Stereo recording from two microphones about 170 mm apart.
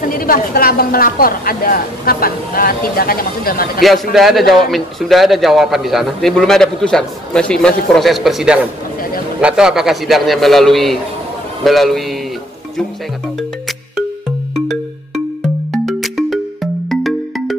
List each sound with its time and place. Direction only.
0.1 s a woman's voice: 55° left (ahead or behind)
3.8 s a man's voice: centre (ahead or behind)
13.4 s music: centre (ahead or behind)